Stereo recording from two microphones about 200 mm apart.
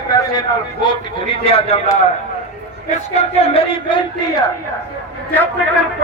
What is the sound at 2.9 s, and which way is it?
A man's voice, 30° left (ahead or behind).